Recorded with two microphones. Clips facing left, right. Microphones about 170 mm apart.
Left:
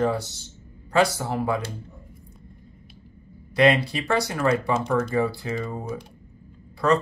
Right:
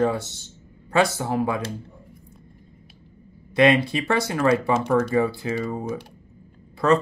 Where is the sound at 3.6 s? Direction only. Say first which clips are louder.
Right 2 dB; 25° right (ahead or behind).